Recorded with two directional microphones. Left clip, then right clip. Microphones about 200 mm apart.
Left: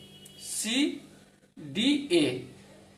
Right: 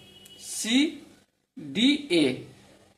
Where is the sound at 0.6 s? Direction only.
40° right (ahead or behind).